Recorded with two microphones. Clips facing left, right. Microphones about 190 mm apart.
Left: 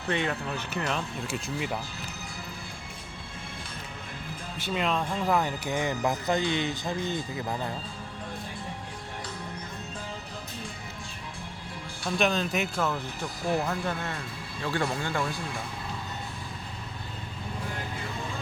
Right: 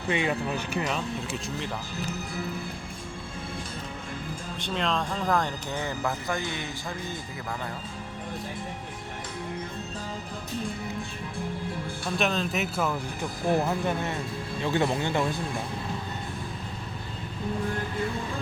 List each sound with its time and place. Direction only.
0.1 s speech: 10° right (ahead or behind)
0.9 s speech: centre (ahead or behind)
4.6 s speech: 5° left (ahead or behind)
12.0 s speech: centre (ahead or behind); by 15.4 s 20° right (ahead or behind)